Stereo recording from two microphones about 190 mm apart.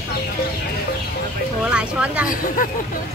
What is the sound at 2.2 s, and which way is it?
Speech, 45° left (ahead or behind).